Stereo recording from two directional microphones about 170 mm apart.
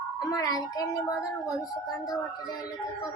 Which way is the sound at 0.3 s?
20° left (ahead or behind).